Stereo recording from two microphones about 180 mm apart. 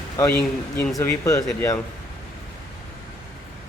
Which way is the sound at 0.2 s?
10° left (ahead or behind).